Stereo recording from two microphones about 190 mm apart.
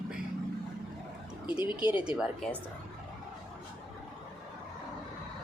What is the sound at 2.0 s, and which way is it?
Speech, 5° right (ahead or behind).